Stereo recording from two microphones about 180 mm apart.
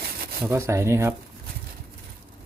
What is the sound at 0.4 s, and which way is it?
Speech, 15° right (ahead or behind).